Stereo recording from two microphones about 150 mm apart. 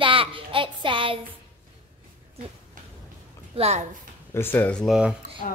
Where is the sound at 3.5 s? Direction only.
45° right (ahead or behind).